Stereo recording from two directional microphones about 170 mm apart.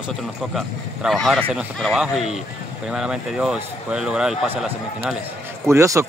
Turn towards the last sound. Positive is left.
turn(degrees=-15)  # may be behind; listen again after turning